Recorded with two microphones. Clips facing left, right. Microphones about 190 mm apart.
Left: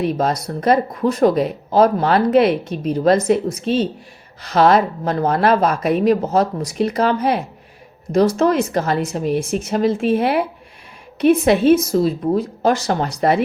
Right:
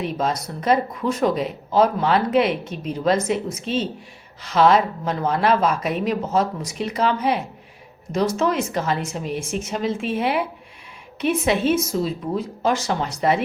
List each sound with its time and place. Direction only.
0.2 s speech: 40° left (ahead or behind)